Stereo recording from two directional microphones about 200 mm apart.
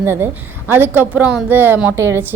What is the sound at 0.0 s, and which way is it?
A woman's voice, 10° right (ahead or behind).